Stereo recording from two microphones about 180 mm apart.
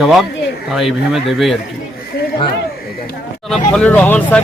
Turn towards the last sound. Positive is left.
turn(degrees=10)  # may be behind; listen again after turning